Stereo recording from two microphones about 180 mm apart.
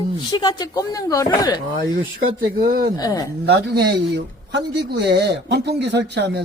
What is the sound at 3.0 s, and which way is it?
Speech, 20° left (ahead or behind).